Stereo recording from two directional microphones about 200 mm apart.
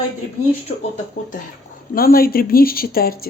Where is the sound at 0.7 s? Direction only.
35° left (ahead or behind).